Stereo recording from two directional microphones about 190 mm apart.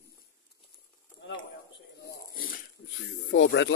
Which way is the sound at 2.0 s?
50° left (ahead or behind).